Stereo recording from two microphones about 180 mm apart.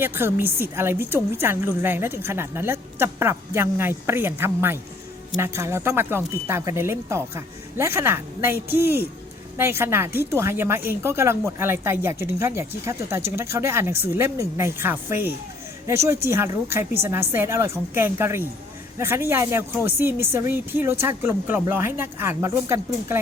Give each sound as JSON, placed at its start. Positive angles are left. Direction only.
{"t": 0.0, "sound": "speech", "side_deg": -10}